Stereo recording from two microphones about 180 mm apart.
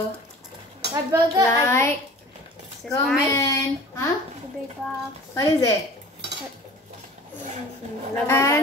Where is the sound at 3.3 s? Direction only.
15° left (ahead or behind).